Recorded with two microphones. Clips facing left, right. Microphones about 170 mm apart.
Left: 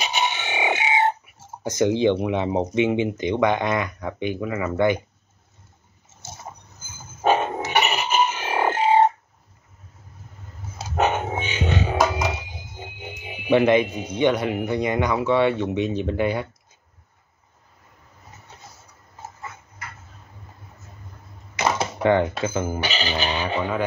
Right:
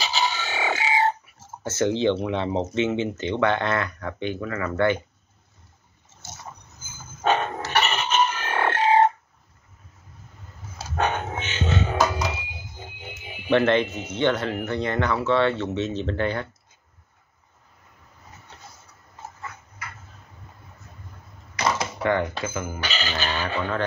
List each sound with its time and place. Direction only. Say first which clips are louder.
0.0 s music: left 1 dB; 20° left (ahead or behind)
1.6 s speech: left 3 dB; 15° left (ahead or behind)
7.2 s a sound: left 3 dB; 10° left (ahead or behind)
11.0 s music: left 4 dB; 10° left (ahead or behind)
12.7 s speech: left 6 dB; 15° left (ahead or behind)
21.5 s typewriter: left 2 dB; 25° left (ahead or behind)
22.4 s speech: left 5 dB; 30° left (ahead or behind)
22.8 s chicken: left 3 dB; 15° left (ahead or behind)